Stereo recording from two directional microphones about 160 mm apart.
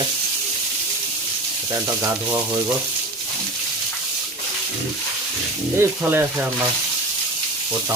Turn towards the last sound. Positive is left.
turn(degrees=-15)  # may be behind; listen again after turning